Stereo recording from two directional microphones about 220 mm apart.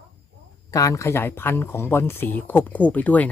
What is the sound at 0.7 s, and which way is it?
Speech, 15° left (ahead or behind).